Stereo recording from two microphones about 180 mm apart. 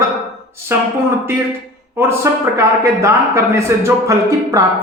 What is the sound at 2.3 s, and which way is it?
Speech, 15° right (ahead or behind).